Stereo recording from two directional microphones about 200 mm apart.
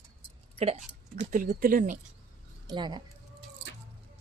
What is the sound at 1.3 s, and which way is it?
Speech, 40° right (ahead or behind).